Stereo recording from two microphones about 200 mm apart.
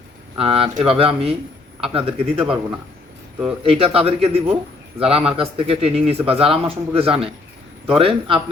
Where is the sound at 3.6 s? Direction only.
30° right (ahead or behind).